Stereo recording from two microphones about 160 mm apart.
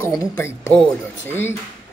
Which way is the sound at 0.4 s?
15° left (ahead or behind).